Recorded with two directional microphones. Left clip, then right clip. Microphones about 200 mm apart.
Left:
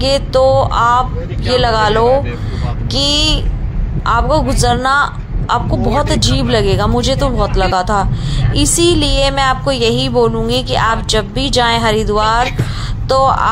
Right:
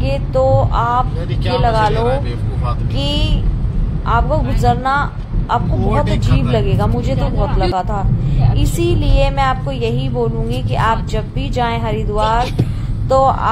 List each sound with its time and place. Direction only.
0.0 s a woman's voice: 15° left (ahead or behind)